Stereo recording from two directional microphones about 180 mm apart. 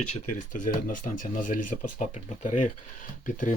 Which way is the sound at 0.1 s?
45° left (ahead or behind).